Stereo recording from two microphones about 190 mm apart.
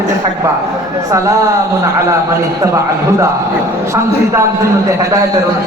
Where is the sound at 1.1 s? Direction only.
15° right (ahead or behind).